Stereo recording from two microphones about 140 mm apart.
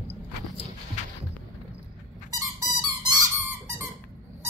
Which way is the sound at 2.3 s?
25° right (ahead or behind).